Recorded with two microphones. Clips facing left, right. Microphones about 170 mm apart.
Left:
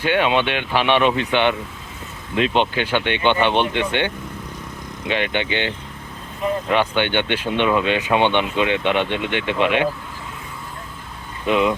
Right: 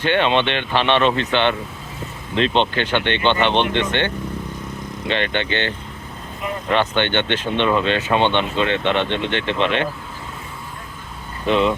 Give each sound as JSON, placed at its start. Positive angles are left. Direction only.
{"t": 0.0, "sound": "speech", "side_deg": 10}
{"t": 5.0, "sound": "speech", "side_deg": 10}
{"t": 11.4, "sound": "speech", "side_deg": 10}